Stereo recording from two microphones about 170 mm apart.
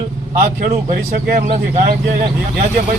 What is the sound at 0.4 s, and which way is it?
A man's voice, 55° right (ahead or behind).